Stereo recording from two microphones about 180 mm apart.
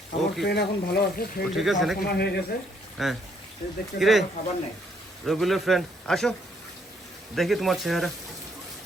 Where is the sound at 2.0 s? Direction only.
65° left (ahead or behind).